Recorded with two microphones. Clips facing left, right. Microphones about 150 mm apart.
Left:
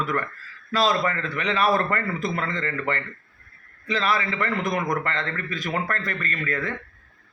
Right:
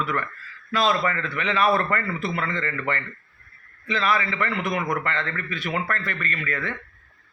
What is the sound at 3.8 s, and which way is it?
A man's voice, 35° left (ahead or behind).